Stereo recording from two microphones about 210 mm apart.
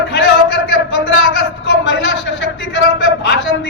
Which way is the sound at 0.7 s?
60° left (ahead or behind).